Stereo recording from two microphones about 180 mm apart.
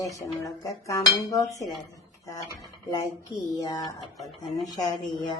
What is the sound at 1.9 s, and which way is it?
Speech, 20° left (ahead or behind).